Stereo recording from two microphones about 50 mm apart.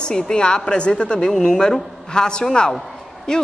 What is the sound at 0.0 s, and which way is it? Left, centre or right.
A woman's voice, centre.